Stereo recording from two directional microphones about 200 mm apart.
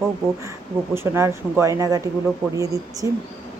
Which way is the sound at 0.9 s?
10° right (ahead or behind).